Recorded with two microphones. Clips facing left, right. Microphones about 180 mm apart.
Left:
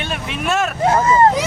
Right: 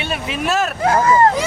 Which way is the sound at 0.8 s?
25° left (ahead or behind).